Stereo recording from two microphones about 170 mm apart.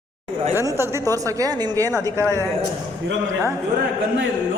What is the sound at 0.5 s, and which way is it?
Speech, 15° right (ahead or behind).